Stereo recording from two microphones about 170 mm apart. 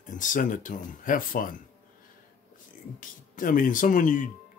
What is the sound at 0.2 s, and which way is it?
Speech, 50° left (ahead or behind).